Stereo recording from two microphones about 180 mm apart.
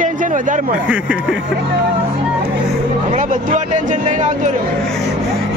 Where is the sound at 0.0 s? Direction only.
45° right (ahead or behind).